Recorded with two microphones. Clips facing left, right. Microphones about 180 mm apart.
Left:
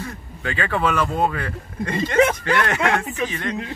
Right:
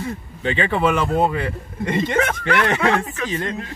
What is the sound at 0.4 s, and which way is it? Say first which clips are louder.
Speech: right 3 dB; 20° right (ahead or behind).